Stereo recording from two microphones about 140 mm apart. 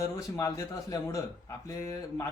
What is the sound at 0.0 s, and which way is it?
Speech, 25° left (ahead or behind).